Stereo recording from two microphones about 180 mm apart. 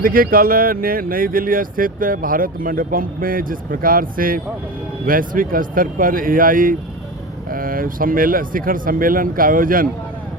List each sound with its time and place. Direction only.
0.0 s speech: 55° right (ahead or behind)